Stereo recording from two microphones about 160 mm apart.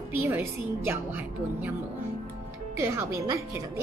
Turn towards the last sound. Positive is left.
turn(degrees=-20)  # may be behind; listen again after turning